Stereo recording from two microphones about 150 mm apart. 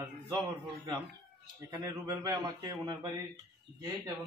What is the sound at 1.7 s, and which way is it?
Speech, 25° right (ahead or behind).